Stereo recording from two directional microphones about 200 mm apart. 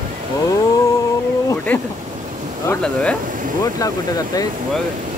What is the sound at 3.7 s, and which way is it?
Speech, 15° left (ahead or behind).